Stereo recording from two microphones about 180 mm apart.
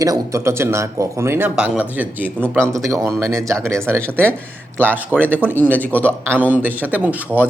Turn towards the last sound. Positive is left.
turn(degrees=-10)  # may be behind; listen again after turning